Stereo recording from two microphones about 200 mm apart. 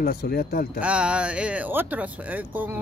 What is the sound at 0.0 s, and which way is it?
Speech, 50° left (ahead or behind).